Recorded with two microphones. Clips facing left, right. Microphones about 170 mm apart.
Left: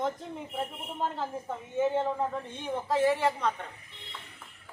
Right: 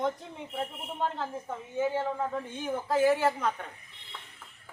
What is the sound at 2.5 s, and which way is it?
Speech, centre (ahead or behind).